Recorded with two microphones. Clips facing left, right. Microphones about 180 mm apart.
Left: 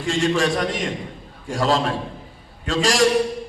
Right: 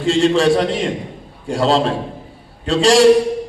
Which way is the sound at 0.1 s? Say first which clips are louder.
Right 7 dB; 30° right (ahead or behind).